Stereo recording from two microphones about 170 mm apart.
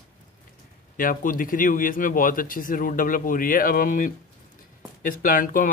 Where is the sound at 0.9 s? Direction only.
55° left (ahead or behind).